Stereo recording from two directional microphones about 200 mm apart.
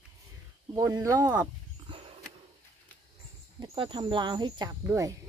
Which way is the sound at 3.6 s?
25° right (ahead or behind).